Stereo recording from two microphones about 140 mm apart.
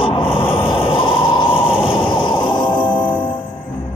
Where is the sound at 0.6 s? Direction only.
40° left (ahead or behind).